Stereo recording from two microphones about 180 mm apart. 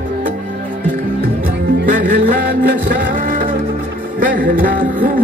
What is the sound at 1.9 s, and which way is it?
Music, 50° right (ahead or behind).